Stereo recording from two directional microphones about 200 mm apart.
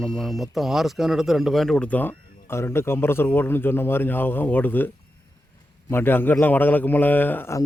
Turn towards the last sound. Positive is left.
turn(degrees=10)  # may be behind; listen again after turning